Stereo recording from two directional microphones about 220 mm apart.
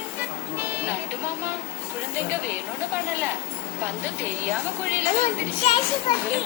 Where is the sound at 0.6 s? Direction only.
10° right (ahead or behind).